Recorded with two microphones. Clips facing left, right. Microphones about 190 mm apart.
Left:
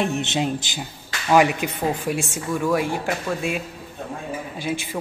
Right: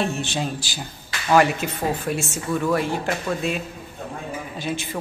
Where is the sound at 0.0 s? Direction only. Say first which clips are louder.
Left 2 dB; 20° left (ahead or behind).